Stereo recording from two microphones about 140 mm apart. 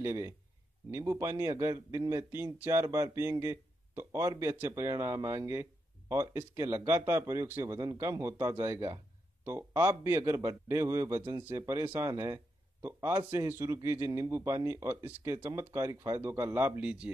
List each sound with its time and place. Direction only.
0.0 s a man's voice: 20° right (ahead or behind)